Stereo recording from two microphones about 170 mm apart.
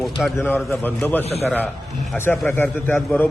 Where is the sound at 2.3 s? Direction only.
10° left (ahead or behind).